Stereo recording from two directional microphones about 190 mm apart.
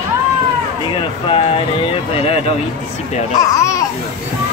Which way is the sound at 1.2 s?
30° left (ahead or behind).